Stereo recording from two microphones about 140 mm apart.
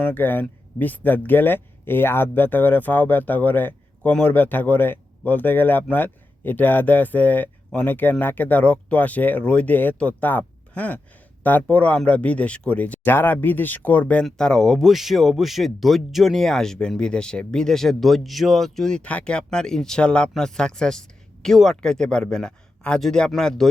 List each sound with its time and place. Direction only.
0.0 s speech: 10° left (ahead or behind)